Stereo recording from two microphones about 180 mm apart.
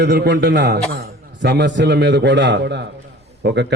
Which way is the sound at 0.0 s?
65° right (ahead or behind).